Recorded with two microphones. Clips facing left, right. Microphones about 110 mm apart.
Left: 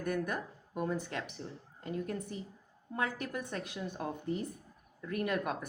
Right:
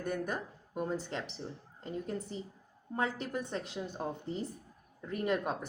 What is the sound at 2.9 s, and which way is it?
Speech, 30° right (ahead or behind).